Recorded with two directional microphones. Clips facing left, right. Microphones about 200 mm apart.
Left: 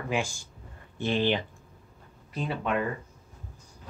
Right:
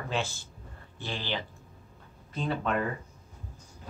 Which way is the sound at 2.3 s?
5° left (ahead or behind).